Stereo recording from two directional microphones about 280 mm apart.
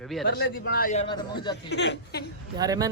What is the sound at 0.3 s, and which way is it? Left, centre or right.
Speech, left.